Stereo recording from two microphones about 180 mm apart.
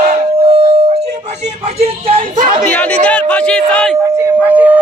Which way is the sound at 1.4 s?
40° right (ahead or behind).